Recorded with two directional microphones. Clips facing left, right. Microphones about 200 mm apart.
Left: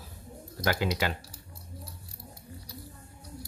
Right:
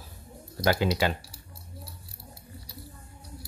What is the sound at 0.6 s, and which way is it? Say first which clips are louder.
Speech: right 4 dB; 30° right (ahead or behind).